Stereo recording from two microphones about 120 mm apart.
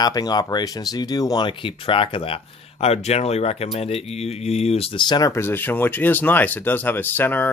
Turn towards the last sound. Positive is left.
turn(degrees=15)  # may be behind; listen again after turning